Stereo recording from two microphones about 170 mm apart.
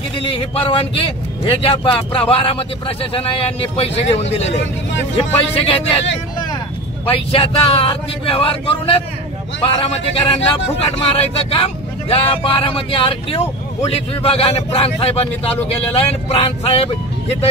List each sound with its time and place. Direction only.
0.3 s speech: 30° left (ahead or behind)
7.1 s speech: 35° left (ahead or behind)